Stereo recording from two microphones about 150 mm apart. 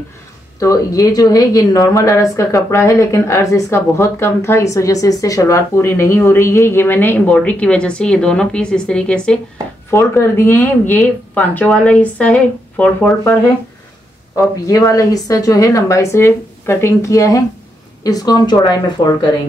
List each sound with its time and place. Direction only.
0.6 s speech: 20° left (ahead or behind); by 9.4 s 5° left (ahead or behind)
9.8 s speech: 15° left (ahead or behind)
14.3 s a woman's voice: 25° left (ahead or behind)